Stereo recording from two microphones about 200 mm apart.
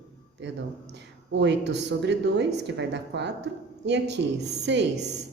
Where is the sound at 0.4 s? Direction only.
65° right (ahead or behind).